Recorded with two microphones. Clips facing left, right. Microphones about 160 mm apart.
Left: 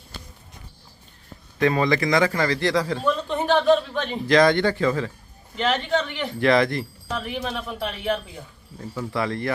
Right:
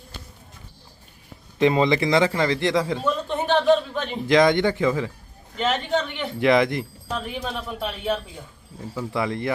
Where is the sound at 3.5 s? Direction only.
Centre (ahead or behind).